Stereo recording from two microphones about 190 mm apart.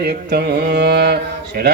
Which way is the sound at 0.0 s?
55° right (ahead or behind).